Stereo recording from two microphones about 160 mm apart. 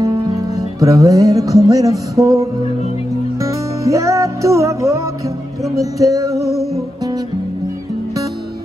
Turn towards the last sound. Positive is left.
turn(degrees=0)  # may be behind; listen again after turning